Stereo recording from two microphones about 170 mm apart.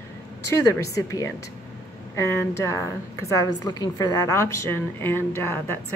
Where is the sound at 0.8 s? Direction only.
20° left (ahead or behind).